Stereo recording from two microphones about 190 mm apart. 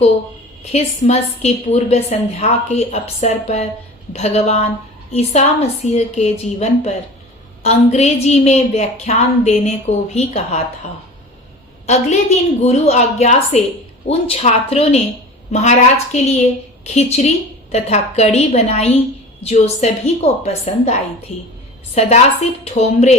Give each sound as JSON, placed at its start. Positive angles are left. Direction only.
{"t": 0.6, "sound": "a woman's voice", "side_deg": 35}
{"t": 11.9, "sound": "a woman's voice", "side_deg": 35}